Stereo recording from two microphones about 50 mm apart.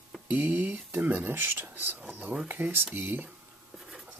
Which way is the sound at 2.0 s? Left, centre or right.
Right.